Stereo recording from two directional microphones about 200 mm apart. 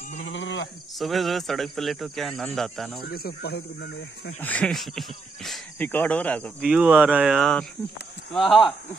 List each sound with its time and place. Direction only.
0.2 s cricket: 65° left (ahead or behind)
0.9 s speech: centre (ahead or behind)
3.1 s speech: 50° left (ahead or behind)
4.4 s speech: 5° left (ahead or behind)